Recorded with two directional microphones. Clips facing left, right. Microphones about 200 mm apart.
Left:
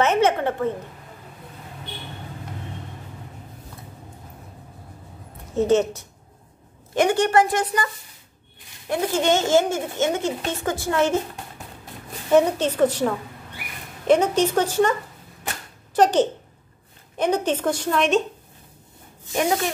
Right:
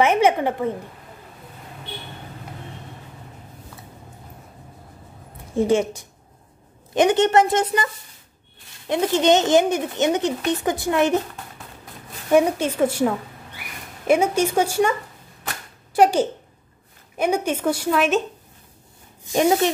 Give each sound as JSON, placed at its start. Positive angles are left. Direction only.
{"t": 0.0, "sound": "speech", "side_deg": -10}
{"t": 5.5, "sound": "a woman's voice", "side_deg": -10}
{"t": 12.3, "sound": "a woman's voice", "side_deg": -10}